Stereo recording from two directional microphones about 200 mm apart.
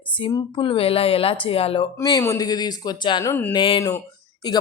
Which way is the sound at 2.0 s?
15° left (ahead or behind).